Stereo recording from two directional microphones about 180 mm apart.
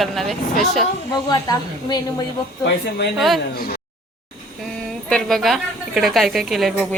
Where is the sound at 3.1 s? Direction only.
Centre (ahead or behind).